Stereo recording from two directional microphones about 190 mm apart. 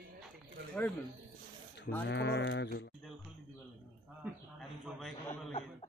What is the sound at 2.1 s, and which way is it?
Sheep, 65° left (ahead or behind).